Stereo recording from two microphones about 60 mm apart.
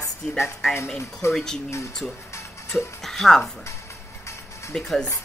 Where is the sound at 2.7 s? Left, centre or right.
Centre.